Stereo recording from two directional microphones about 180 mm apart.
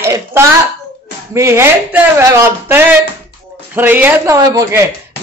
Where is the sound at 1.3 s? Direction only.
15° right (ahead or behind).